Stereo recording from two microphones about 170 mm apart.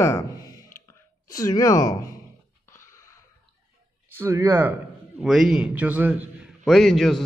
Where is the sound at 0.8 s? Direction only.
20° left (ahead or behind).